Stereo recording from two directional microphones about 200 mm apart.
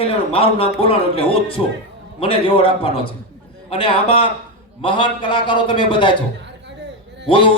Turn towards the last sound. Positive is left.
turn(degrees=25)  # may be behind; listen again after turning